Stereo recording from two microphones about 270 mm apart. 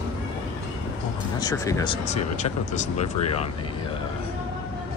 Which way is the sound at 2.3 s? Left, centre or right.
Left.